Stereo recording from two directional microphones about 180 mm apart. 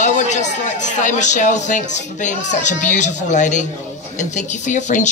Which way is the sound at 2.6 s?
45° left (ahead or behind).